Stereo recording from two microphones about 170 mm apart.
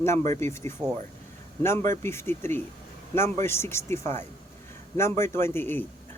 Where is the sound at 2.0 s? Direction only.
15° left (ahead or behind).